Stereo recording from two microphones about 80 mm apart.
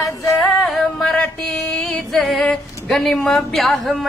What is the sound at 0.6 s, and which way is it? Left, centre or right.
Music, centre.